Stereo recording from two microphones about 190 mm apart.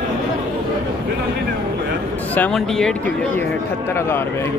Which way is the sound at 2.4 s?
5° left (ahead or behind).